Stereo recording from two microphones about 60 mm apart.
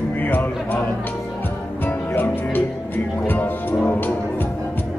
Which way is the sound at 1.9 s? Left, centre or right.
Left.